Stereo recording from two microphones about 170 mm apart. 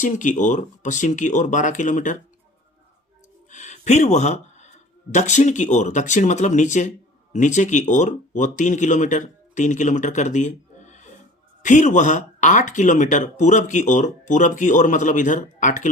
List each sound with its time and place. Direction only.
0.0 s speech: 50° left (ahead or behind)
3.5 s a sound: 45° left (ahead or behind)
5.1 s speech: 45° left (ahead or behind)